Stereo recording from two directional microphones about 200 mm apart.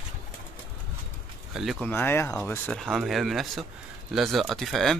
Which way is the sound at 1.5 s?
Centre (ahead or behind).